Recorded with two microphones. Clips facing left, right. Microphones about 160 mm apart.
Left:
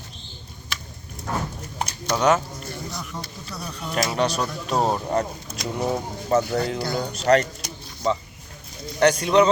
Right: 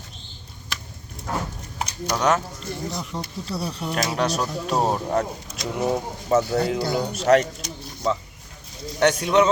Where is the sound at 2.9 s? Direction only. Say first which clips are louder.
Right 4 dB; 25° right (ahead or behind).